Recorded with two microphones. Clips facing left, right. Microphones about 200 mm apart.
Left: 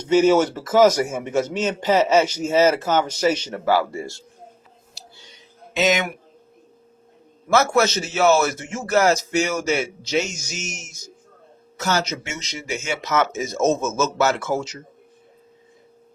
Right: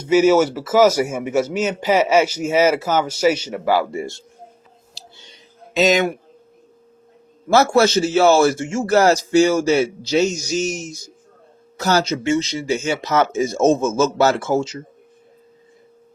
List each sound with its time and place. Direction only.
0.0 s a man's voice: 10° right (ahead or behind)
5.7 s a man's voice: 35° right (ahead or behind)
7.5 s a man's voice: 30° right (ahead or behind)